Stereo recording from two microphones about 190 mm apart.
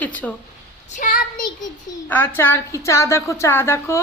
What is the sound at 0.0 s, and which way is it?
Speech, 10° left (ahead or behind).